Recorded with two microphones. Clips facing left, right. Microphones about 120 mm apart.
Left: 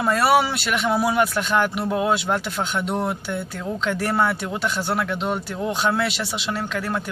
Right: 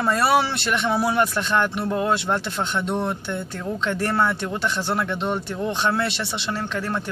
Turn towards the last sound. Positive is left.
turn(degrees=5)  # may be behind; listen again after turning